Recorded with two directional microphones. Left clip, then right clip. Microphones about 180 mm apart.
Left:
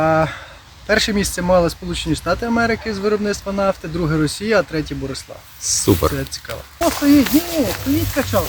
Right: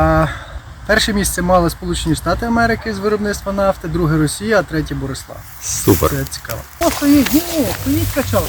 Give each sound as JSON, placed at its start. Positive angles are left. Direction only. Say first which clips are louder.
{"t": 0.0, "sound": "a sound", "louder": "right 1 dB", "side_deg": 20}
{"t": 0.9, "sound": "speech", "louder": "right 2 dB", "side_deg": 15}
{"t": 5.8, "sound": "speech", "louder": "right 3 dB", "side_deg": -5}
{"t": 6.1, "sound": "speech", "louder": "right 2 dB", "side_deg": 15}
{"t": 6.7, "sound": "speech", "louder": "right 1 dB", "side_deg": -10}